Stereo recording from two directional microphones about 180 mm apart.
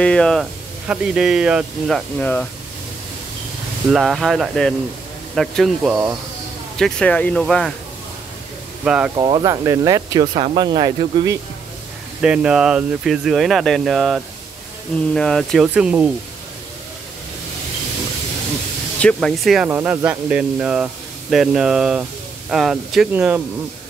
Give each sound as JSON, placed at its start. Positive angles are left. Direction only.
{"t": 0.0, "sound": "speech", "side_deg": 5}
{"t": 3.9, "sound": "speech", "side_deg": 0}
{"t": 6.8, "sound": "speech", "side_deg": 5}
{"t": 8.8, "sound": "speech", "side_deg": -5}
{"t": 9.1, "sound": "speech", "side_deg": -25}
{"t": 12.2, "sound": "speech", "side_deg": -5}
{"t": 18.9, "sound": "speech", "side_deg": 5}
{"t": 19.7, "sound": "speech", "side_deg": -15}